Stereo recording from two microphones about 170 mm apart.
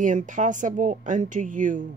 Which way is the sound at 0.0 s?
50° right (ahead or behind).